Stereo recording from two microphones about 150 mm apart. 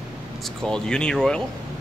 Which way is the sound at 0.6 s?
5° left (ahead or behind).